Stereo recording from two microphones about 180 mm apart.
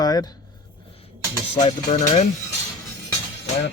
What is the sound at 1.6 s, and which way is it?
Speech, 40° left (ahead or behind).